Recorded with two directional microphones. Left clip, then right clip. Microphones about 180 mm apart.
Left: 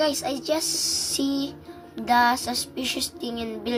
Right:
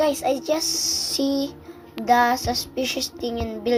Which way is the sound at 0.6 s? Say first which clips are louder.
Right 2 dB; 25° left (ahead or behind).